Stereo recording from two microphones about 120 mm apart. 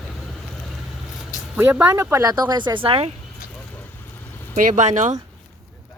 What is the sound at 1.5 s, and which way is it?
Speech, 15° right (ahead or behind).